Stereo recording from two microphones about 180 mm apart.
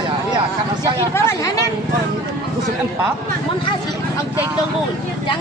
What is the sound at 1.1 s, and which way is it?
Speech, 15° left (ahead or behind).